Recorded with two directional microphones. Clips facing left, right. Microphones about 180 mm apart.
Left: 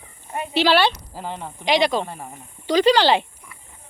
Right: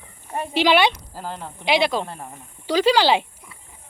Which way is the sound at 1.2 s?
Centre (ahead or behind).